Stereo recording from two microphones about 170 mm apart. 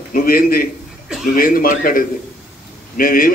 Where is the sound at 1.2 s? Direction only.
55° left (ahead or behind).